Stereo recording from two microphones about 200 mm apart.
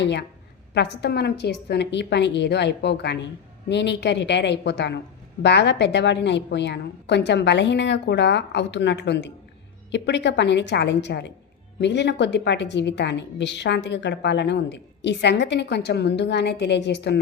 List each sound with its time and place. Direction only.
0.0 s a woman's voice: 60° left (ahead or behind)